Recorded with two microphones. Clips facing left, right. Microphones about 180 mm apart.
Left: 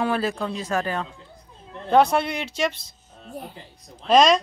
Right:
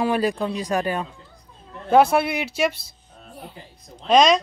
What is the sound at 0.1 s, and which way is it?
Speech, 15° right (ahead or behind).